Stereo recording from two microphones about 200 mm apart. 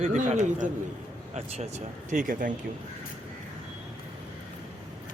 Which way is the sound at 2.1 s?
40° right (ahead or behind).